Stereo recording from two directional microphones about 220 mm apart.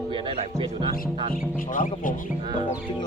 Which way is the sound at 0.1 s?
25° right (ahead or behind).